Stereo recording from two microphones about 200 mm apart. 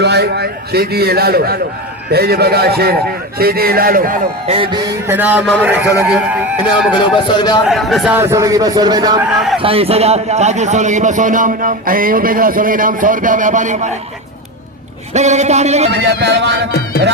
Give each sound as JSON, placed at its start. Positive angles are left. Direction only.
{"t": 0.0, "sound": "a man's voice", "side_deg": -55}
{"t": 4.4, "sound": "a man's voice", "side_deg": -25}
{"t": 7.3, "sound": "a man's voice", "side_deg": 20}
{"t": 7.7, "sound": "a man's voice", "side_deg": 0}
{"t": 15.1, "sound": "a man's voice", "side_deg": -35}
{"t": 15.9, "sound": "speech", "side_deg": -60}